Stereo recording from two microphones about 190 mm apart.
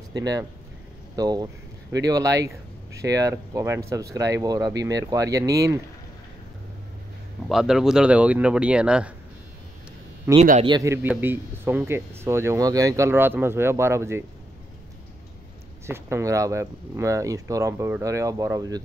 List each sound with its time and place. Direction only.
0.1 s speech: 20° right (ahead or behind)
1.1 s a sound: 20° right (ahead or behind)
2.0 s speech: 15° right (ahead or behind)
7.4 s speech: centre (ahead or behind)
10.3 s speech: 15° right (ahead or behind)
15.9 s speech: 15° right (ahead or behind)